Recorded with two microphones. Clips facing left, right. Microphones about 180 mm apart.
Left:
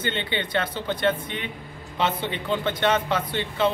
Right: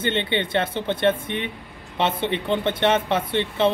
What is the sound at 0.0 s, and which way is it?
Speech, 25° right (ahead or behind).